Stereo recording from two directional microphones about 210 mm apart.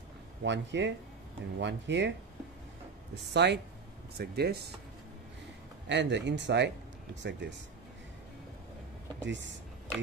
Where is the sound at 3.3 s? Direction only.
55° right (ahead or behind).